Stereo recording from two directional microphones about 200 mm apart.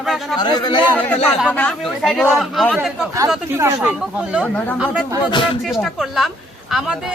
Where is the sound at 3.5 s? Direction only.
15° right (ahead or behind).